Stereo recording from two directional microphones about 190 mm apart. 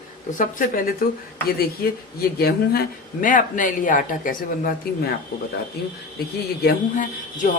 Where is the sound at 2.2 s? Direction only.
55° left (ahead or behind).